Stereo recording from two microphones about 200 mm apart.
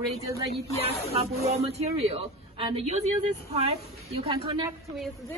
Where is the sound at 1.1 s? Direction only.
30° right (ahead or behind).